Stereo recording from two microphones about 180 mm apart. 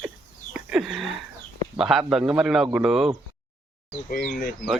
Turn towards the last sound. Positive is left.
turn(degrees=55)  # may be behind; listen again after turning